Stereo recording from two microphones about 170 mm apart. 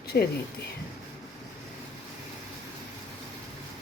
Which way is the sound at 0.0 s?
65° left (ahead or behind).